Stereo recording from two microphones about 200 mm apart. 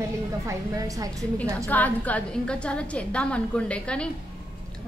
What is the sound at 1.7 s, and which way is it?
A woman's voice, 10° left (ahead or behind).